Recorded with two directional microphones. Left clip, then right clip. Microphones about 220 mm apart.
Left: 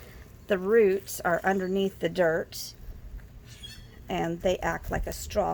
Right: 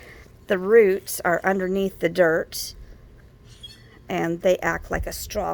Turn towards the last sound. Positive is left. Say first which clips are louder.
# right 1 dB
turn(degrees=-35)  # may be behind; listen again after turning